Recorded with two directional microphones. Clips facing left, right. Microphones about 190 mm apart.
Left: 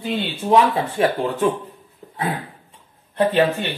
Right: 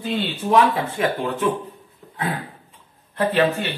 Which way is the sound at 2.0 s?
35° left (ahead or behind).